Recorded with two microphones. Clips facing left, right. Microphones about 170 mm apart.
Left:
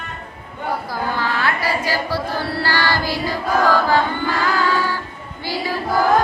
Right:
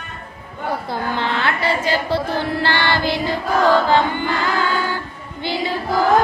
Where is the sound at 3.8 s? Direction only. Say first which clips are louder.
Right 1 dB; 20° right (ahead or behind).